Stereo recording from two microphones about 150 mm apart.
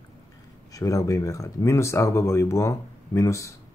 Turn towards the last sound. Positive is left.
turn(degrees=20)  # may be behind; listen again after turning